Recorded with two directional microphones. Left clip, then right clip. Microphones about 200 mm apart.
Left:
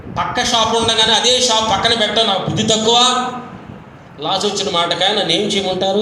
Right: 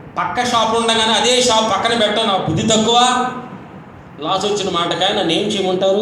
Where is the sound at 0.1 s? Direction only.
55° left (ahead or behind).